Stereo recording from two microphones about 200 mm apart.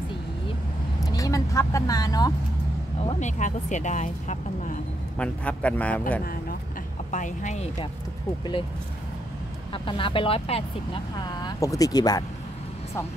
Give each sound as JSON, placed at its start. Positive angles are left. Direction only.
{"t": 1.0, "sound": "vehicle", "side_deg": 15}
{"t": 3.0, "sound": "speech", "side_deg": 35}
{"t": 5.2, "sound": "a man's voice", "side_deg": 5}
{"t": 7.1, "sound": "speech", "side_deg": 40}
{"t": 9.7, "sound": "speech", "side_deg": 25}
{"t": 11.1, "sound": "speech", "side_deg": 20}